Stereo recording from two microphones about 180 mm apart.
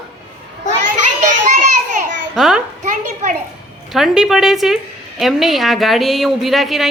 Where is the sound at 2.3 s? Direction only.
Centre (ahead or behind).